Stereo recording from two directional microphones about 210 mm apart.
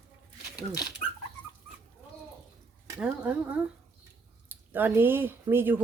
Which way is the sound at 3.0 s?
5° right (ahead or behind).